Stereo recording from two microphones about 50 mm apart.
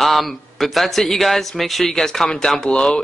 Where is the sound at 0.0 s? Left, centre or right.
Centre.